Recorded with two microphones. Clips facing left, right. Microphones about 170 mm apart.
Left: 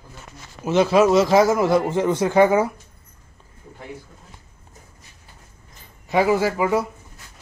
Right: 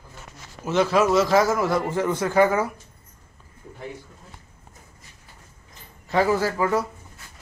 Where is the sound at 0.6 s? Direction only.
15° left (ahead or behind).